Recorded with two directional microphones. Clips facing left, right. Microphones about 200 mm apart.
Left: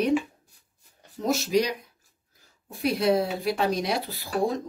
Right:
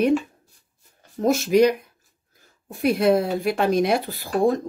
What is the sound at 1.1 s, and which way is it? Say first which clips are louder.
Speech: right 6 dB; 50° right (ahead or behind).